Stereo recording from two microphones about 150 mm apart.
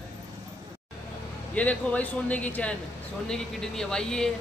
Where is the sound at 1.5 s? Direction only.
10° left (ahead or behind).